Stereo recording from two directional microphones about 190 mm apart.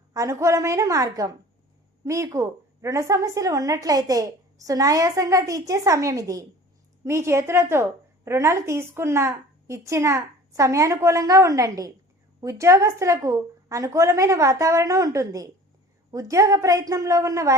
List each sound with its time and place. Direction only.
0.1 s a woman's voice: 15° right (ahead or behind)